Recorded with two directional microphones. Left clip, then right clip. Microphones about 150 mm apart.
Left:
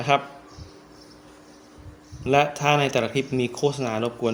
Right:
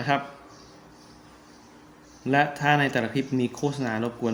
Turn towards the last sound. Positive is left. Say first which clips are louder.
# left 3 dB
turn(degrees=35)  # may be behind; listen again after turning